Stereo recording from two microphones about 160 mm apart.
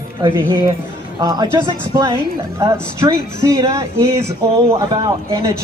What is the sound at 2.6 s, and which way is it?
Speech, 20° right (ahead or behind).